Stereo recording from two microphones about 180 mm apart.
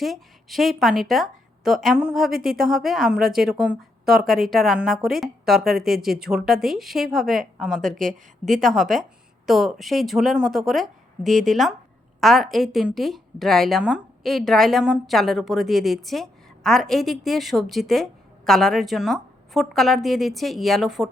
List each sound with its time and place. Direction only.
0.0 s a woman's voice: centre (ahead or behind)
7.9 s a woman's voice: 45° right (ahead or behind)
8.6 s a woman's voice: centre (ahead or behind)
11.3 s a woman's voice: 45° right (ahead or behind)
12.2 s a woman's voice: centre (ahead or behind)